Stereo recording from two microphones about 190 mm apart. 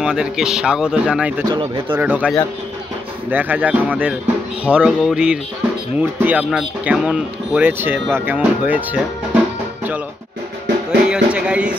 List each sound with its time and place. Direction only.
0.0 s speech: 5° right (ahead or behind)
1.5 s speech: 25° right (ahead or behind)
2.0 s speech: 10° right (ahead or behind)
10.9 s a sound: 5° right (ahead or behind)